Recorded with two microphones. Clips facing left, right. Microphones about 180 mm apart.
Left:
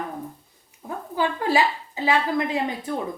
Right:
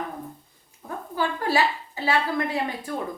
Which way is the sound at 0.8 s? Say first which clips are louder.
Left 2 dB; 15° left (ahead or behind).